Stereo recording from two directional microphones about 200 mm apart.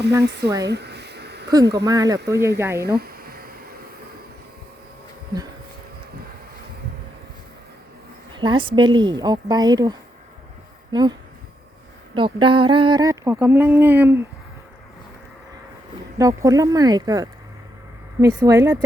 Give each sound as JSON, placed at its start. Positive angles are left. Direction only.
{"t": 0.2, "sound": "speech", "side_deg": -55}
{"t": 0.7, "sound": "a sound", "side_deg": -55}
{"t": 1.8, "sound": "speech", "side_deg": -20}
{"t": 2.8, "sound": "a sound", "side_deg": -50}
{"t": 8.4, "sound": "speech", "side_deg": -25}
{"t": 12.1, "sound": "speech", "side_deg": -25}
{"t": 16.1, "sound": "speech", "side_deg": -15}